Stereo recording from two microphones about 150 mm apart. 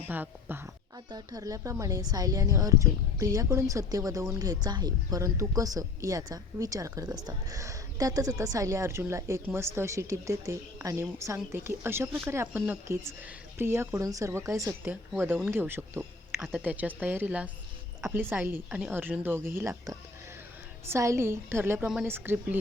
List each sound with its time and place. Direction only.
0.1 s speech: 10° right (ahead or behind)
1.1 s a woman's voice: 25° right (ahead or behind)